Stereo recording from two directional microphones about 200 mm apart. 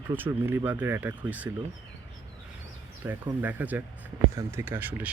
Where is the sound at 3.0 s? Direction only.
10° right (ahead or behind).